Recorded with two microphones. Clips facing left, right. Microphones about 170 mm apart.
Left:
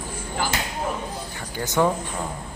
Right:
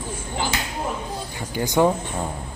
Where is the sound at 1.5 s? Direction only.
15° right (ahead or behind).